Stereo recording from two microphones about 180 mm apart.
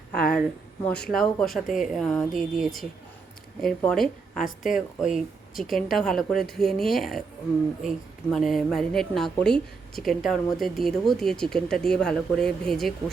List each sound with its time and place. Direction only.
0.1 s a sound: 5° left (ahead or behind)
0.9 s a woman's voice: 5° left (ahead or behind)
3.8 s a woman's voice: centre (ahead or behind)
4.4 s speech: 45° left (ahead or behind)
4.9 s a woman's voice: centre (ahead or behind)